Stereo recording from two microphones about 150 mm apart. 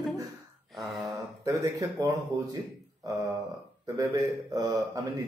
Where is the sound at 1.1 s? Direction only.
20° right (ahead or behind).